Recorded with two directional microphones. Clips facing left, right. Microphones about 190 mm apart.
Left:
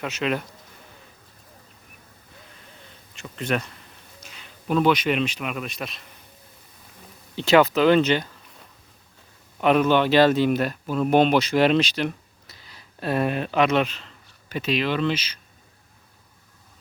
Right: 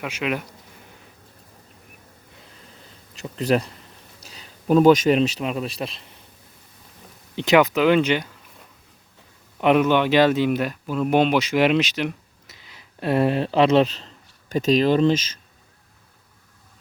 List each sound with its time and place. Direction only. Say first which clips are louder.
0.0 s speech: even; 10° right (ahead or behind)
3.2 s a man's voice: right 5 dB; 35° right (ahead or behind)
7.3 s speech: even; 15° right (ahead or behind)
9.6 s speech: right 1 dB; 15° right (ahead or behind); by 15.4 s 45° right (ahead or behind)